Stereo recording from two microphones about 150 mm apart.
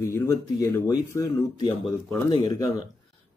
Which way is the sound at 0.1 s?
20° left (ahead or behind).